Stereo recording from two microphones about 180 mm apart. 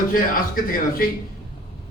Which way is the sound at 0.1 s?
50° left (ahead or behind).